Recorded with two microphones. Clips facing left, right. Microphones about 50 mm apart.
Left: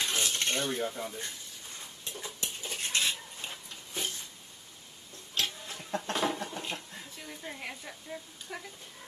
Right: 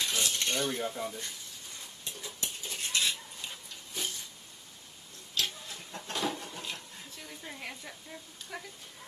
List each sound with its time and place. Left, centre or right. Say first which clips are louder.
0.0 s cutlery: left 1 dB; left
0.8 s speech: even; centre
2.1 s cutlery: left 2 dB; left
5.3 s a sound: left 1 dB; left
7.2 s speech: left 2 dB; centre